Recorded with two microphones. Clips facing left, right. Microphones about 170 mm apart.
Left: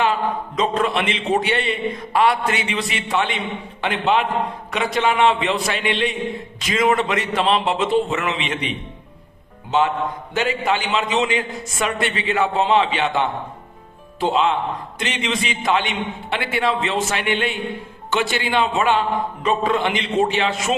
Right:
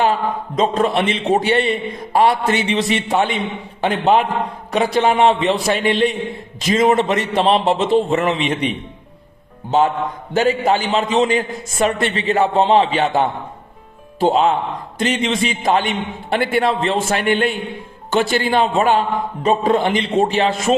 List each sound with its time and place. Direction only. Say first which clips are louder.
0.0 s a man's voice: right 3 dB; 40° right (ahead or behind)
10.3 s a man's voice: right 6 dB; 40° right (ahead or behind)